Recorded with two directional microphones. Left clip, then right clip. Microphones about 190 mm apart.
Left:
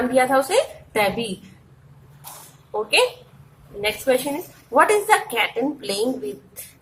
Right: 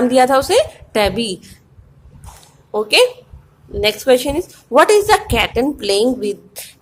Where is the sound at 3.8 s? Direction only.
50° right (ahead or behind).